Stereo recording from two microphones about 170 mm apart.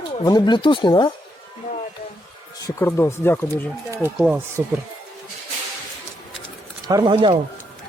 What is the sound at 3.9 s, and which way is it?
Speech, 10° right (ahead or behind).